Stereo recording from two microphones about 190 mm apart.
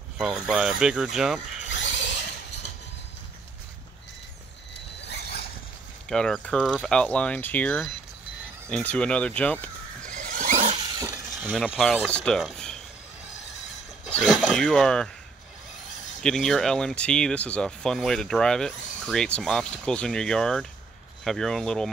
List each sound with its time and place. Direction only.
0.2 s speech: centre (ahead or behind)
1.7 s a sound: 70° left (ahead or behind)
5.0 s rodents: 60° left (ahead or behind)
6.0 s speech: 5° left (ahead or behind)
10.0 s squeal: 45° right (ahead or behind)
11.0 s speech: 10° right (ahead or behind)
14.1 s speech: centre (ahead or behind)
16.2 s speech: 5° left (ahead or behind)